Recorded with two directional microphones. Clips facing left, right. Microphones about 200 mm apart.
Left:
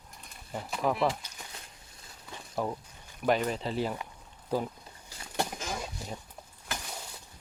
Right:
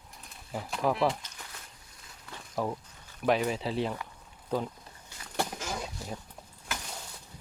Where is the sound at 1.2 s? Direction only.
15° left (ahead or behind).